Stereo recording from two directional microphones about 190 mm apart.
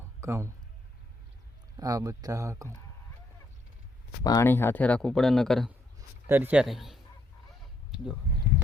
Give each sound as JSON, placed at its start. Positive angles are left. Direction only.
{"t": 0.2, "sound": "a man's voice", "side_deg": -15}
{"t": 1.7, "sound": "speech", "side_deg": -20}
{"t": 4.2, "sound": "speech", "side_deg": 20}
{"t": 6.0, "sound": "a man's voice", "side_deg": -10}
{"t": 7.9, "sound": "a sound", "side_deg": 0}